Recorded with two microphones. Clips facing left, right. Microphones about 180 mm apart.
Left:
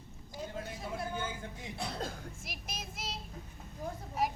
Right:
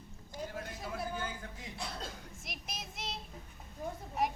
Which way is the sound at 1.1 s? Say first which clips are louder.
Left 2 dB; 25° left (ahead or behind).